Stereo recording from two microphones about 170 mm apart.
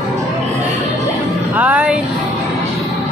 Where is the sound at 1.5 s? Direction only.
10° right (ahead or behind).